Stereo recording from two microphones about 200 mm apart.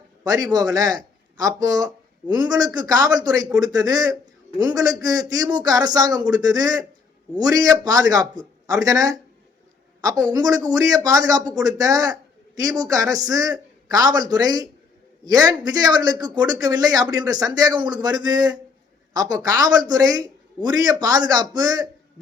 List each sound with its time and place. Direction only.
0.3 s a man's voice: 20° right (ahead or behind)